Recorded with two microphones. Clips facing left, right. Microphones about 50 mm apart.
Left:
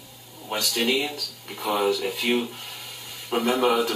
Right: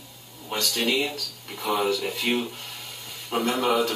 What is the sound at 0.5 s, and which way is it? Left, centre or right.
Speech, centre.